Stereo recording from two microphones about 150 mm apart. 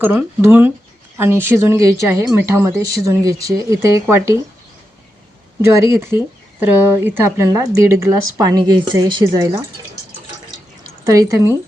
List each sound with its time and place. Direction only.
0.0 s speech: 15° right (ahead or behind)
5.7 s speech: 20° right (ahead or behind)
11.0 s speech: 20° right (ahead or behind)